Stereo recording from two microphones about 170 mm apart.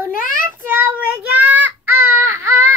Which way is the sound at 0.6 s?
10° right (ahead or behind).